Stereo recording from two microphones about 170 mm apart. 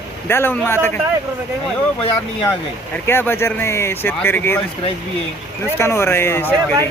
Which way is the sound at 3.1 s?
15° left (ahead or behind).